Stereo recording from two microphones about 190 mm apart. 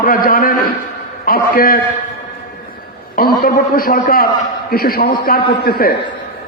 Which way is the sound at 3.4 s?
50° left (ahead or behind).